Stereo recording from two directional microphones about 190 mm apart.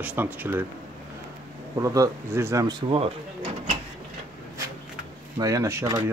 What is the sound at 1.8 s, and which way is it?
Speech, 15° right (ahead or behind).